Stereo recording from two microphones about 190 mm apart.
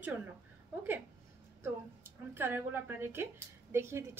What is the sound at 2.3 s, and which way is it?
A woman's voice, 10° right (ahead or behind).